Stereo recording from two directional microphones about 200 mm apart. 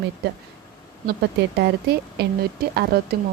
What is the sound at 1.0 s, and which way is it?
Speech, 55° right (ahead or behind).